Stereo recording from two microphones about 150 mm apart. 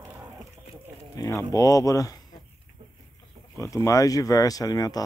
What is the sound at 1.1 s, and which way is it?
Speech, 20° left (ahead or behind).